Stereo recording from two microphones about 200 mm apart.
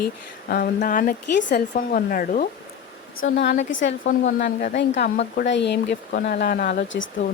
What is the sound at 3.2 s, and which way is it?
Speech, 60° left (ahead or behind).